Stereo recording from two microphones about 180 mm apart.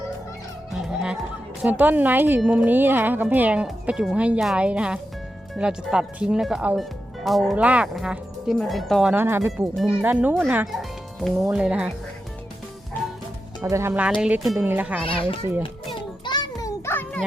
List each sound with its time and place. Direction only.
0.7 s music: 5° right (ahead or behind)
1.6 s speech: 10° right (ahead or behind)
9.5 s speech: centre (ahead or behind)
13.7 s speech: 15° right (ahead or behind)
15.0 s a child's voice: 30° left (ahead or behind)
16.2 s a sound: 25° left (ahead or behind)